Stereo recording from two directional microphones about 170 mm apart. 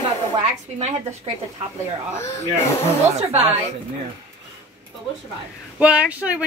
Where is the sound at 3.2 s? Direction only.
35° right (ahead or behind).